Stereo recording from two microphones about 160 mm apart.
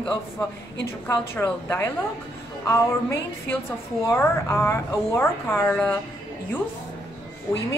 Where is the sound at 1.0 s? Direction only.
10° left (ahead or behind).